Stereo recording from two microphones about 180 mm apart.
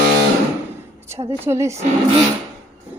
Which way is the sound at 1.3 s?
15° right (ahead or behind).